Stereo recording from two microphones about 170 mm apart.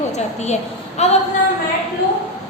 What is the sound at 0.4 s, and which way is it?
Speech, 40° left (ahead or behind).